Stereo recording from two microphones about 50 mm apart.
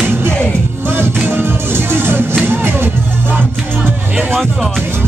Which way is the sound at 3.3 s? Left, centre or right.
Right.